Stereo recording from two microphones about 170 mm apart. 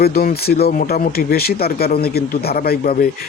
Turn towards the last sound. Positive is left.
turn(degrees=60)  # may be behind; listen again after turning